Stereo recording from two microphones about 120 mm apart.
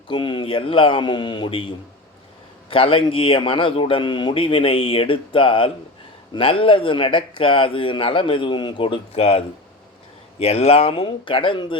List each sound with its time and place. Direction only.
0.1 s a man's voice: 45° left (ahead or behind)
10.4 s a man's voice: 60° left (ahead or behind)